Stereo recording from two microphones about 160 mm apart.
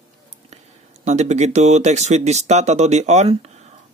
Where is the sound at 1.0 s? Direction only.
45° right (ahead or behind).